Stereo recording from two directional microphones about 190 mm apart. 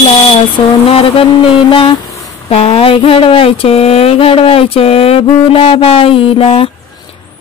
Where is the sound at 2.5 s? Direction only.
30° left (ahead or behind).